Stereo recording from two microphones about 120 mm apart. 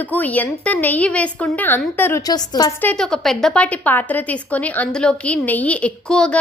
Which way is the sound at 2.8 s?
10° left (ahead or behind).